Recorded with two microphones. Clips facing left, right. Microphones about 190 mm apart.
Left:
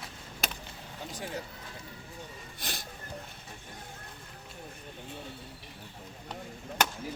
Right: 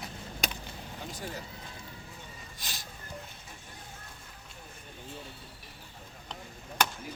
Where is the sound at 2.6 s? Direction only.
55° left (ahead or behind).